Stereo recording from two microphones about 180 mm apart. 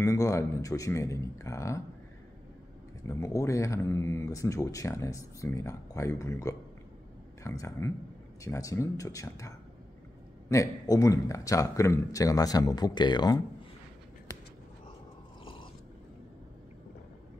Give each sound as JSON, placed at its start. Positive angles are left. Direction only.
{"t": 0.0, "sound": "speech", "side_deg": 20}
{"t": 3.1, "sound": "speech", "side_deg": 15}
{"t": 10.5, "sound": "speech", "side_deg": 20}